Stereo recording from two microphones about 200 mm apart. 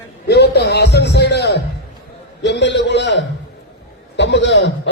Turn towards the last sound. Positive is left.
turn(degrees=60)  # may be behind; listen again after turning